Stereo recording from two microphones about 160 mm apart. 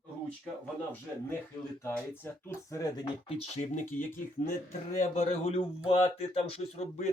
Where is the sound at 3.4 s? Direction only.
45° left (ahead or behind).